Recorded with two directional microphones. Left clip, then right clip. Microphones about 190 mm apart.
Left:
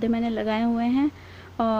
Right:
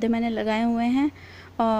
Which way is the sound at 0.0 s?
15° right (ahead or behind).